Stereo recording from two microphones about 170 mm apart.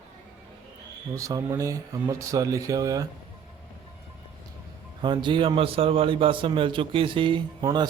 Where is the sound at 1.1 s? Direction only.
20° right (ahead or behind).